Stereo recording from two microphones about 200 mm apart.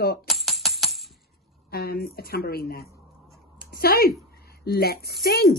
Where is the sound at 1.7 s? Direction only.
50° left (ahead or behind).